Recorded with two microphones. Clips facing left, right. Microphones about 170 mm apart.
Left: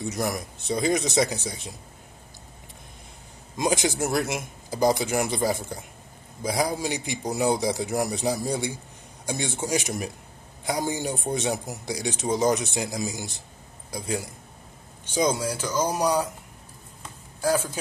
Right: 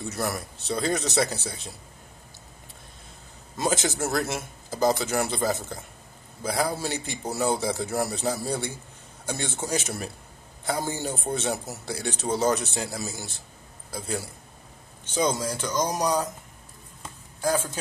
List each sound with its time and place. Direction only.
0.0 s a man's voice: 15° left (ahead or behind)
3.5 s a man's voice: 15° left (ahead or behind)
17.4 s a man's voice: 10° left (ahead or behind)